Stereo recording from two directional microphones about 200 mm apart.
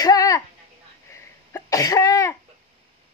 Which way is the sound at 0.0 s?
20° left (ahead or behind).